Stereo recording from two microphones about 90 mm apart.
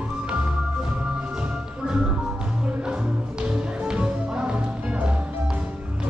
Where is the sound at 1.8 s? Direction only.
10° right (ahead or behind).